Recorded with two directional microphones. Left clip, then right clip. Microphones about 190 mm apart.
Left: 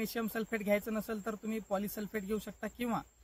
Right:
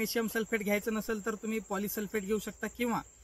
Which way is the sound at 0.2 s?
30° left (ahead or behind).